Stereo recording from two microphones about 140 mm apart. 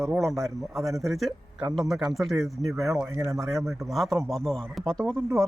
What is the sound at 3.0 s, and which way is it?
Speech, 15° right (ahead or behind).